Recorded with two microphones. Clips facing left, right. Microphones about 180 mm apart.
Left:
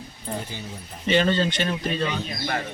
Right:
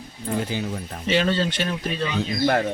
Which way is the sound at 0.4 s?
85° right.